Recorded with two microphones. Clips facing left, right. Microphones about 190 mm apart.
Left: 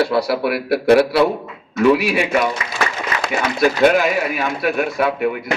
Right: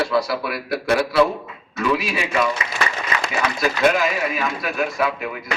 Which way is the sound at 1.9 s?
65° left (ahead or behind).